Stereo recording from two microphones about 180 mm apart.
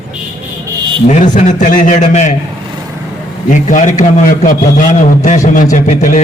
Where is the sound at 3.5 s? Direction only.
45° left (ahead or behind).